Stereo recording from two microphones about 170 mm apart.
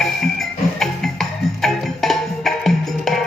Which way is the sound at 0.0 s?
Centre (ahead or behind).